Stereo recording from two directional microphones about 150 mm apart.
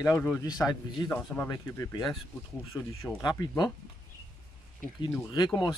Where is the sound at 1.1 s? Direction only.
10° left (ahead or behind).